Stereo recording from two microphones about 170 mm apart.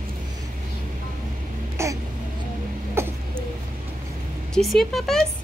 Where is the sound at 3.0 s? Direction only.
15° right (ahead or behind).